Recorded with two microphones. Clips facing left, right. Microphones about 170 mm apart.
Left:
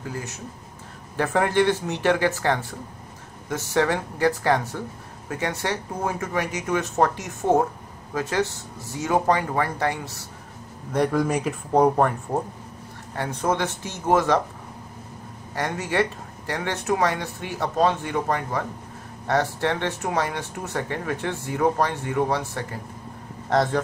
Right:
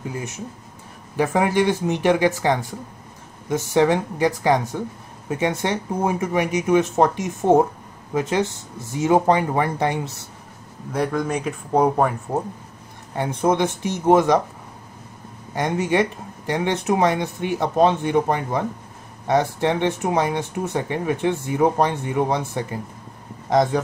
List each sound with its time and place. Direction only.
0.0 s speech: 20° right (ahead or behind)
10.9 s speech: centre (ahead or behind)
13.1 s speech: 15° right (ahead or behind)
15.5 s speech: 20° right (ahead or behind)